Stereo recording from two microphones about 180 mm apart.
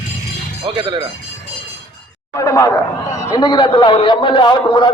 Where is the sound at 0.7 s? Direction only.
30° right (ahead or behind).